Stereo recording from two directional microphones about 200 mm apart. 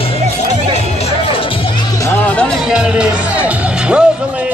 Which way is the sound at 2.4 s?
5° right (ahead or behind).